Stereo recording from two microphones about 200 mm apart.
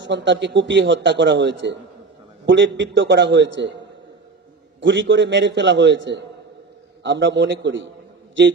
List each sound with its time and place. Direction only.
0.0 s a man's voice: 60° right (ahead or behind)